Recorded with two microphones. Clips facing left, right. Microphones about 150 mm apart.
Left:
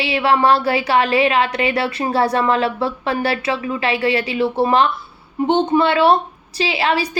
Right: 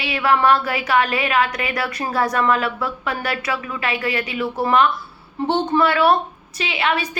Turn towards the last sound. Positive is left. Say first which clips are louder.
# left 3 dB
turn(degrees=30)  # may be behind; listen again after turning